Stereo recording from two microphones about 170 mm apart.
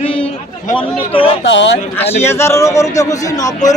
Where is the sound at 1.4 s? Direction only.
90° left.